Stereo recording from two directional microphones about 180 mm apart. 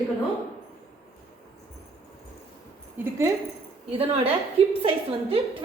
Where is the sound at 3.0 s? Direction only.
15° right (ahead or behind).